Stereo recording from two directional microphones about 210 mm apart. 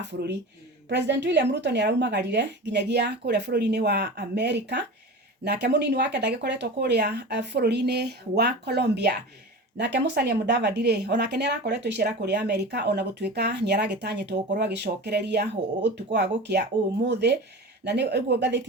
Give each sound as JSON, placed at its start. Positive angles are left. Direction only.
{"t": 0.0, "sound": "speech", "side_deg": -55}